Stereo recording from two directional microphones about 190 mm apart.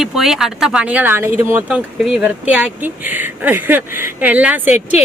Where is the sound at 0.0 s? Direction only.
Centre (ahead or behind).